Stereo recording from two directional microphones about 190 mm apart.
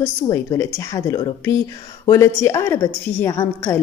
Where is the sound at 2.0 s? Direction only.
15° left (ahead or behind).